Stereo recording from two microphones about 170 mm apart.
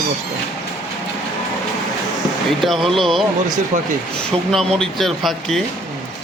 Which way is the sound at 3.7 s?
45° right (ahead or behind).